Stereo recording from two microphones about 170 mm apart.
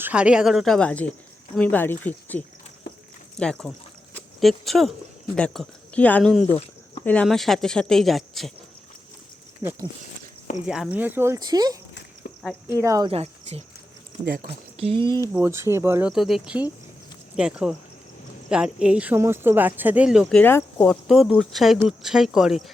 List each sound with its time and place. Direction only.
0.0 s speech: 5° right (ahead or behind)
6.5 s a sound: 35° left (ahead or behind)
7.0 s speech: 5° left (ahead or behind)
9.6 s speech: 15° right (ahead or behind)
13.1 s speech: 40° right (ahead or behind)
14.3 s speech: 60° right (ahead or behind)
14.8 s speech: 35° right (ahead or behind)
15.0 s speech: 15° left (ahead or behind)
15.3 s speech: 10° right (ahead or behind)
20.4 s speech: 10° left (ahead or behind)
20.9 s speech: centre (ahead or behind)